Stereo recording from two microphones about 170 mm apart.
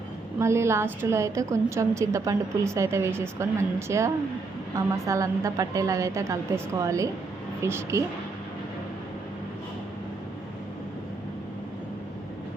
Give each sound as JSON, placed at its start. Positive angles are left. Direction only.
{"t": 0.3, "sound": "a woman's voice", "side_deg": -15}